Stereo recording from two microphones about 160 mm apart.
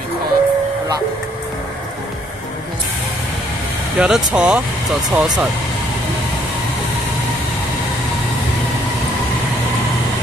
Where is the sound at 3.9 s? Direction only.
5° right (ahead or behind).